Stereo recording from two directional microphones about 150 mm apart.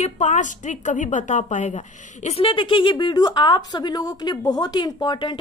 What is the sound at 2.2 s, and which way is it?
Speech, 40° left (ahead or behind).